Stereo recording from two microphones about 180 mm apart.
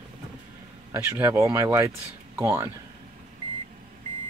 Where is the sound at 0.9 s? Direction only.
15° right (ahead or behind).